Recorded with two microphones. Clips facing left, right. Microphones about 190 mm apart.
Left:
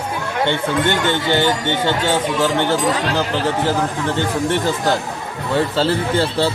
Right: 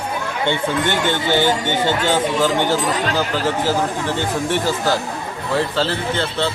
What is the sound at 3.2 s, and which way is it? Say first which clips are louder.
Speech: left 1 dB; 10° right (ahead or behind).